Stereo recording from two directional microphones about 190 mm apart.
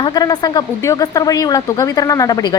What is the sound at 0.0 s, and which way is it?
A woman's voice, 20° left (ahead or behind).